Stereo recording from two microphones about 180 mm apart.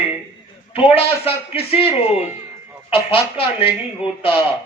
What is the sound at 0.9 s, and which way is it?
Speech, 30° left (ahead or behind).